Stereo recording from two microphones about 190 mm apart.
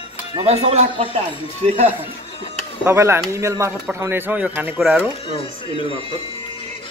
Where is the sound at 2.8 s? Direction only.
15° right (ahead or behind).